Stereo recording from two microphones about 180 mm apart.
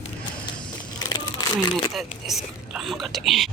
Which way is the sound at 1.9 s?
Centre (ahead or behind).